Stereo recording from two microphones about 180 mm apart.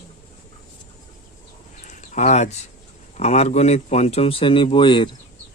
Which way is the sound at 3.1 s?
35° left (ahead or behind).